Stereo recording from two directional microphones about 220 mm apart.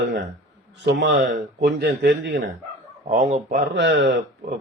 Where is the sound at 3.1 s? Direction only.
30° right (ahead or behind).